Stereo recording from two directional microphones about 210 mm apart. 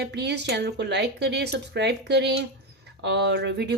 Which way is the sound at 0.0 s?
55° right (ahead or behind).